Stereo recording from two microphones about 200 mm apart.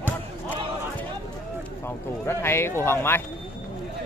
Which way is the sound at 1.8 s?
10° left (ahead or behind).